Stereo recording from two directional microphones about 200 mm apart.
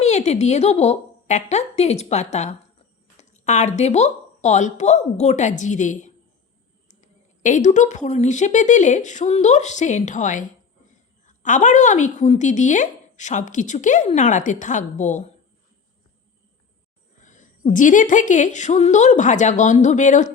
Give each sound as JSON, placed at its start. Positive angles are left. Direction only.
{"t": 0.0, "sound": "a woman's voice", "side_deg": 35}
{"t": 17.2, "sound": "a woman's voice", "side_deg": 40}